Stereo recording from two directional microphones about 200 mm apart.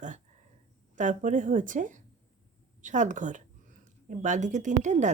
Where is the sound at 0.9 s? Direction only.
40° right (ahead or behind).